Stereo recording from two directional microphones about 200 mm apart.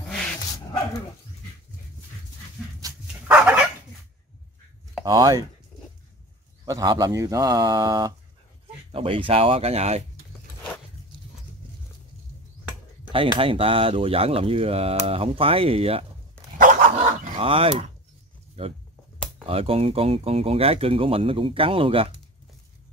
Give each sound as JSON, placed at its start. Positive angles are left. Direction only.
{"t": 3.3, "sound": "dog", "side_deg": -5}
{"t": 5.0, "sound": "speech", "side_deg": -20}
{"t": 6.6, "sound": "speech", "side_deg": -20}
{"t": 13.1, "sound": "speech", "side_deg": -25}
{"t": 16.5, "sound": "dog", "side_deg": -40}
{"t": 17.4, "sound": "speech", "side_deg": -30}
{"t": 19.4, "sound": "speech", "side_deg": -30}